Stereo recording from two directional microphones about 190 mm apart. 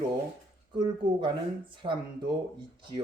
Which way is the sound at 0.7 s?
25° right (ahead or behind).